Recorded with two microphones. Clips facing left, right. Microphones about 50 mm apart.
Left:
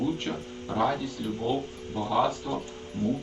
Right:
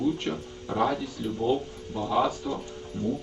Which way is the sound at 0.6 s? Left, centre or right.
Centre.